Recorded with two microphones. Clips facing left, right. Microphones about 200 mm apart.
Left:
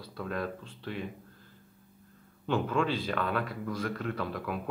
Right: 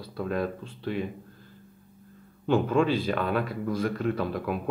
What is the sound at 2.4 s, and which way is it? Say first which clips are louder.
Speech: right 6 dB; 15° right (ahead or behind).